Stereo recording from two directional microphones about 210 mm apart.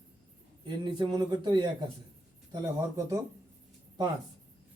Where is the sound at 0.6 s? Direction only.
20° right (ahead or behind).